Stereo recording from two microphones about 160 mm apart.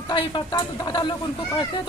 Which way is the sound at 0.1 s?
30° left (ahead or behind).